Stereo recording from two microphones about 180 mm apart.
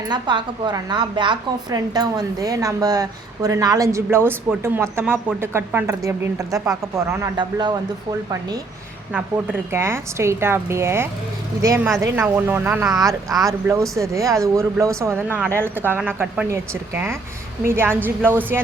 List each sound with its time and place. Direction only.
0.1 s a woman's voice: 25° right (ahead or behind)
9.1 s speech: 10° right (ahead or behind)